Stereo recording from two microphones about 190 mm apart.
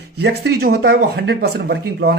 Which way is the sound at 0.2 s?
60° right (ahead or behind).